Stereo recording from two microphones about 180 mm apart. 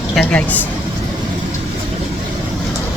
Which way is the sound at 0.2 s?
5° left (ahead or behind).